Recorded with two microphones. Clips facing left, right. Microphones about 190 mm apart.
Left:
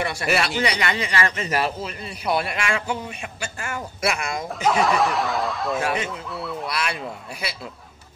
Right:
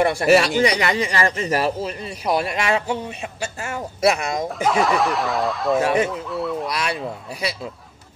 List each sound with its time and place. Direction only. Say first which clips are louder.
0.0 s speech: right 8 dB; 50° right (ahead or behind)
4.5 s speech: even; centre (ahead or behind)
5.8 s speech: right 8 dB; 40° right (ahead or behind)
6.0 s speech: right 6 dB; centre (ahead or behind)
6.7 s speech: right 3 dB; 40° right (ahead or behind)